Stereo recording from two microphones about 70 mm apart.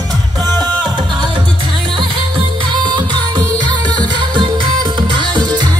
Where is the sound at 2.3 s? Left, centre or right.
Right.